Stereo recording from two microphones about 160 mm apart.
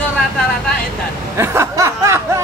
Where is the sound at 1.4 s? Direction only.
15° right (ahead or behind).